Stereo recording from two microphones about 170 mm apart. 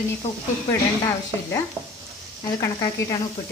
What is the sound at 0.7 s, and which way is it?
A woman's voice, 20° left (ahead or behind).